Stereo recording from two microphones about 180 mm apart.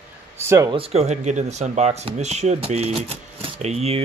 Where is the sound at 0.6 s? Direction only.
30° right (ahead or behind).